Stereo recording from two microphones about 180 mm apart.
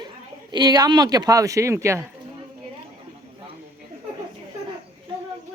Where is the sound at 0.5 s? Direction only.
20° right (ahead or behind).